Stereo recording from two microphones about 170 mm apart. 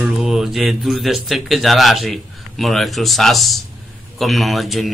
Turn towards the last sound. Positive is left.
turn(degrees=0)  # may be behind; listen again after turning